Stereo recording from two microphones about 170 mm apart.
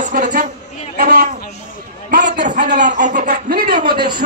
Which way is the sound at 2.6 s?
45° right (ahead or behind).